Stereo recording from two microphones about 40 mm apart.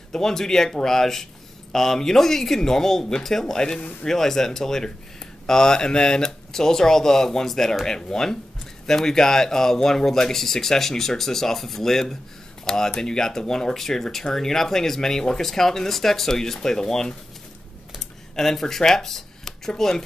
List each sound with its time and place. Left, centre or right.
0.1 s speech: centre
18.3 s speech: centre